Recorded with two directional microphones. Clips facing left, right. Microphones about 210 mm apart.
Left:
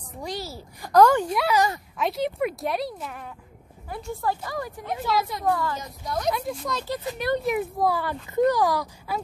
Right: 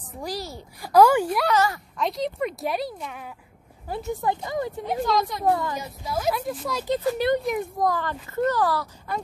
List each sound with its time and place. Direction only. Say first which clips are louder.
0.2 s a woman's voice: right 1 dB; centre (ahead or behind)
1.5 s speech: left 1 dB; 15° left (ahead or behind)
2.0 s speech: left 1 dB; 5° left (ahead or behind)
3.9 s a woman's voice: right 2 dB; 20° right (ahead or behind)
5.0 s speech: right 1 dB; 5° left (ahead or behind)
5.4 s a woman's voice: right 2 dB; 20° right (ahead or behind)
5.8 s speech: right 1 dB; 5° right (ahead or behind)
6.9 s a woman's voice: right 6 dB; 20° right (ahead or behind)
7.4 s speech: left 1 dB; 5° left (ahead or behind)